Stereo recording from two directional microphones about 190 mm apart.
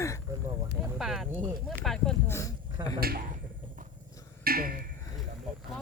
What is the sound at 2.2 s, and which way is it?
Speech, 15° left (ahead or behind).